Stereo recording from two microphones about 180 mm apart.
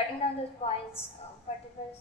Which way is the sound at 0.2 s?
35° left (ahead or behind).